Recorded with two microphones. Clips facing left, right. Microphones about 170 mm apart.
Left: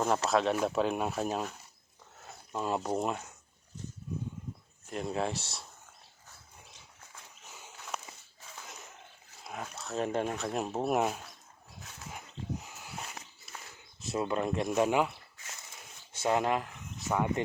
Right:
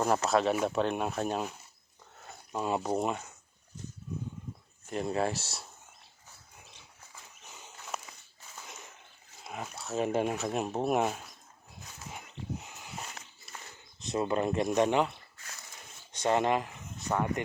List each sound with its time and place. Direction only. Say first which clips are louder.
0.3 s speech: right 1 dB; centre (ahead or behind)
4.9 s speech: right 2 dB; centre (ahead or behind)
7.7 s a sound: even; centre (ahead or behind)
9.4 s speech: right 1 dB; 5° right (ahead or behind)
11.8 s dog: even; centre (ahead or behind)
13.4 s a sound: even; centre (ahead or behind)
16.1 s speech: right 2 dB; 5° left (ahead or behind)
17.4 s speech: left 2 dB; 30° left (ahead or behind)